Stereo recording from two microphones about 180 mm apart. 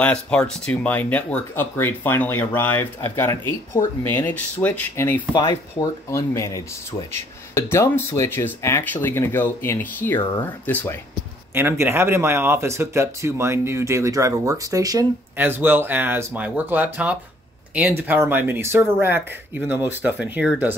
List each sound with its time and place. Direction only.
0.0 s speech: 5° left (ahead or behind)
11.5 s speech: 15° right (ahead or behind)